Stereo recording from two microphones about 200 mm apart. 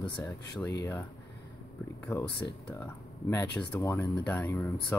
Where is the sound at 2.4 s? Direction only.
15° left (ahead or behind).